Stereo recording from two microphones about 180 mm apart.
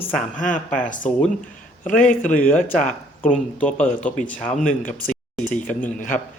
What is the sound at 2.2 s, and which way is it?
Speech, 5° left (ahead or behind).